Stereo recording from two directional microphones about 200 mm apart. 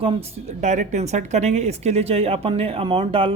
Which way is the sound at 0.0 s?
30° right (ahead or behind).